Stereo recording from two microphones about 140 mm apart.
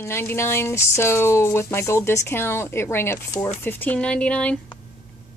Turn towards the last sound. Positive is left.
turn(degrees=10)  # may be behind; listen again after turning